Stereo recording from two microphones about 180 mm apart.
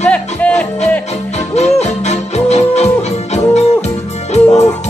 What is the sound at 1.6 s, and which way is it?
Music, 40° left (ahead or behind).